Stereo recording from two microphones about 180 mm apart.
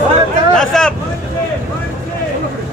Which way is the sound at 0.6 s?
5° left (ahead or behind).